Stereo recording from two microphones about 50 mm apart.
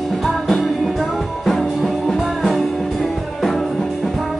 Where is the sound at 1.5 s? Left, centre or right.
Centre.